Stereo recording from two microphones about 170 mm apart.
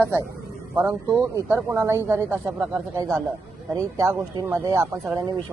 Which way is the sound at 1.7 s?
20° right (ahead or behind).